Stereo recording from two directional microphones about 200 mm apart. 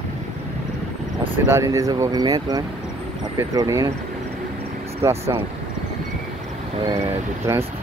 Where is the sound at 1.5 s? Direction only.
15° right (ahead or behind).